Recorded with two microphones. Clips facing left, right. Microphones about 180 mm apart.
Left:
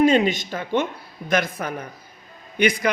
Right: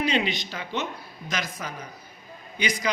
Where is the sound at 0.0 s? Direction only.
45° left (ahead or behind).